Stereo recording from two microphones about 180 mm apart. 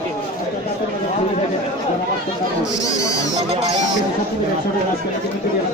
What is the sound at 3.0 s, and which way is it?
Speech, 20° left (ahead or behind).